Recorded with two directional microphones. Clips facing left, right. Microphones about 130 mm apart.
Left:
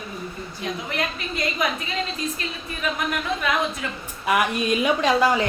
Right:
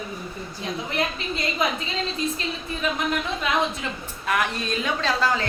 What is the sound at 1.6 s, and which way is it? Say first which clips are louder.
Speech: right 1 dB; 30° right (ahead or behind).